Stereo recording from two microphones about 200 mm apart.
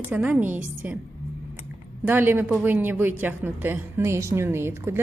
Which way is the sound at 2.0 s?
10° right (ahead or behind).